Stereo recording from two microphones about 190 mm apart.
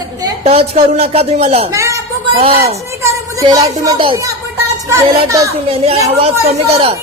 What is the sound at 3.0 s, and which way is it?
Speech, 20° right (ahead or behind).